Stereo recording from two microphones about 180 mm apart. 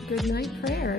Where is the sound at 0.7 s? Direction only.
60° left (ahead or behind).